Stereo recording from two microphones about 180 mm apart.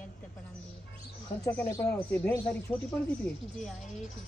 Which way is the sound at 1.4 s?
20° left (ahead or behind).